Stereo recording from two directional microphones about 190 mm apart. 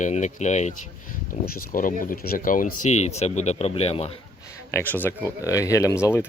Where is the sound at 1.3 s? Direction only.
50° left (ahead or behind); by 4.1 s 30° left (ahead or behind).